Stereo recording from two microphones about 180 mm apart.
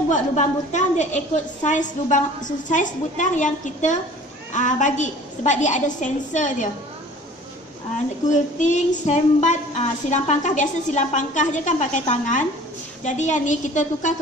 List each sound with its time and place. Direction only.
0.1 s speech: 40° left (ahead or behind)
8.3 s speech: 45° left (ahead or behind)